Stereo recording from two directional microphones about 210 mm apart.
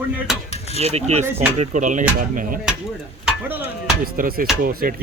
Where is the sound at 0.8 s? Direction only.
30° right (ahead or behind).